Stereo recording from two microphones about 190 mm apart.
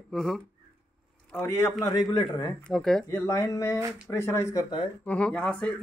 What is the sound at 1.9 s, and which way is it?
Speech, 20° left (ahead or behind).